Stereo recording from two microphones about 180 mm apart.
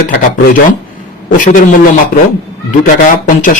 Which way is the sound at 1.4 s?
50° left (ahead or behind).